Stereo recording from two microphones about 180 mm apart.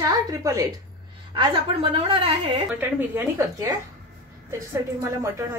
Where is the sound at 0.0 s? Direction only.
20° right (ahead or behind).